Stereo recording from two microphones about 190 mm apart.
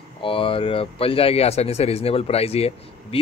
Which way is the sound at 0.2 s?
30° left (ahead or behind).